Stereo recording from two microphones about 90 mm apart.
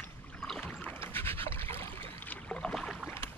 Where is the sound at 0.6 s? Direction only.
20° left (ahead or behind).